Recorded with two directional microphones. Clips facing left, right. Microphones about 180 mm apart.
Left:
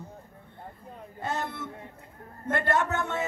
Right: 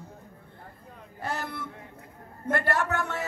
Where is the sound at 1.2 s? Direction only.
20° left (ahead or behind).